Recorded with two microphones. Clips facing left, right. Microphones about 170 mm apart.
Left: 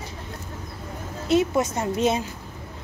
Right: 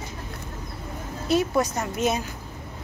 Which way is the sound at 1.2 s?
20° left (ahead or behind).